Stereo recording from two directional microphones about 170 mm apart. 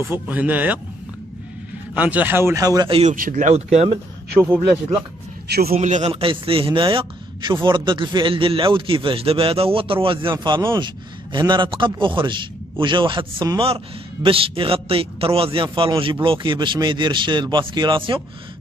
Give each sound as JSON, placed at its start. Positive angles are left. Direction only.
{"t": 0.1, "sound": "speech", "side_deg": -10}
{"t": 2.0, "sound": "speech", "side_deg": -10}
{"t": 2.9, "sound": "a man's voice", "side_deg": -40}
{"t": 3.2, "sound": "speech", "side_deg": -50}
{"t": 5.5, "sound": "a man's voice", "side_deg": -65}
{"t": 5.8, "sound": "a man's voice", "side_deg": -45}